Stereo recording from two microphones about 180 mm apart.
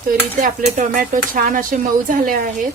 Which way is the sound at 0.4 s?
45° right (ahead or behind).